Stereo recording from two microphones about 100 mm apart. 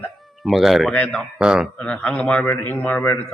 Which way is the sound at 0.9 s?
10° left (ahead or behind).